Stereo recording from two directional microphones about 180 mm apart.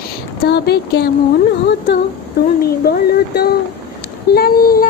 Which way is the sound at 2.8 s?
60° left (ahead or behind).